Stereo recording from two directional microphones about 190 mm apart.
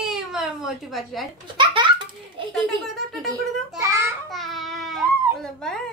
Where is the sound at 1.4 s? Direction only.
25° right (ahead or behind).